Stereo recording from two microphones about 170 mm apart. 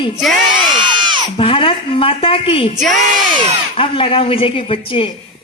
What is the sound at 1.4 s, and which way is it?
A woman's voice, 30° left (ahead or behind).